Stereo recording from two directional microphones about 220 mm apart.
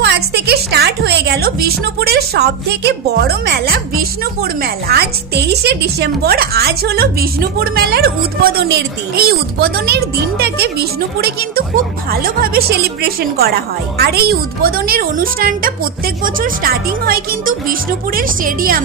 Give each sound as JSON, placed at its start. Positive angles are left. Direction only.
{"t": 0.0, "sound": "speech", "side_deg": -50}